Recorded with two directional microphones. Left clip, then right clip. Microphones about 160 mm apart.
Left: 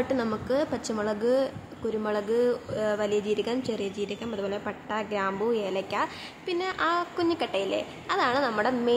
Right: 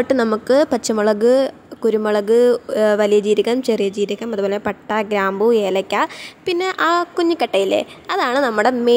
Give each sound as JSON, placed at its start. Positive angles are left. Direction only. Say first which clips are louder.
{"t": 0.0, "sound": "speech", "louder": "right 11 dB", "side_deg": -45}